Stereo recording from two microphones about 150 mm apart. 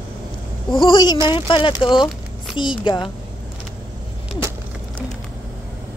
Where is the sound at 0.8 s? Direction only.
30° left (ahead or behind).